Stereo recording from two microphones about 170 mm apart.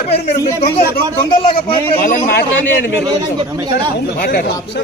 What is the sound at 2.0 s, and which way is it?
Speech, 60° left (ahead or behind).